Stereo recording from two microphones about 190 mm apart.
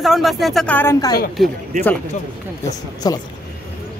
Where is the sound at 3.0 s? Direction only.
20° left (ahead or behind).